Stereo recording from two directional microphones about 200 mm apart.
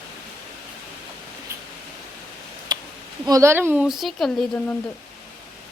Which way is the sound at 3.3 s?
15° right (ahead or behind).